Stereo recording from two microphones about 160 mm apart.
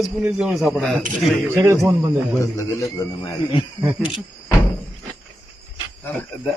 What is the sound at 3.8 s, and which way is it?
Speech, 10° right (ahead or behind).